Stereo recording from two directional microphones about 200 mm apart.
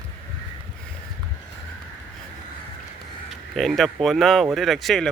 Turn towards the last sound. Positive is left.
turn(degrees=0)  # may be behind; listen again after turning